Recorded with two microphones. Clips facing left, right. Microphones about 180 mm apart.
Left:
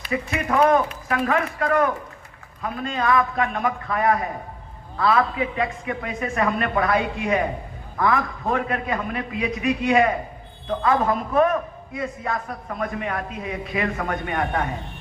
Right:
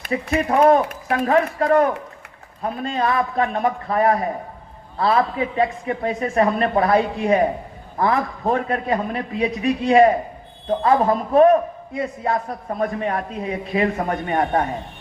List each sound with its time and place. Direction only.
0.1 s a man's voice: 35° right (ahead or behind)